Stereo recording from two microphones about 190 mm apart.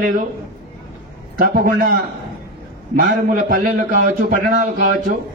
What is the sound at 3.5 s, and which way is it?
A man's voice, 45° right (ahead or behind).